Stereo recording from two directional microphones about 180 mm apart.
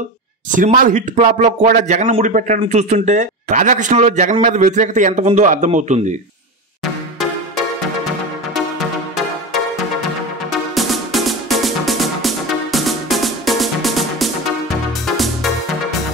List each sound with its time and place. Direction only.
0.6 s speech: 45° right (ahead or behind)
10.5 s music: centre (ahead or behind)